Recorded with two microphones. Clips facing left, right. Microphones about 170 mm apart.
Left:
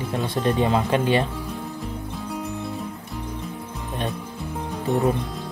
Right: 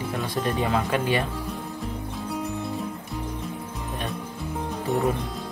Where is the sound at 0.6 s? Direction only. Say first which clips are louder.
Left 3 dB; 25° left (ahead or behind).